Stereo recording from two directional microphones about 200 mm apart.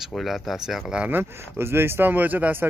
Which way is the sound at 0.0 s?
Centre (ahead or behind).